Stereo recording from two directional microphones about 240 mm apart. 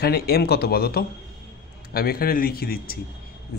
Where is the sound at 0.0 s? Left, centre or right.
Left.